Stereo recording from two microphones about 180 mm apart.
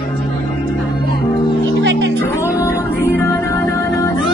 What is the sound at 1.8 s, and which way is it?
Music, 80° right.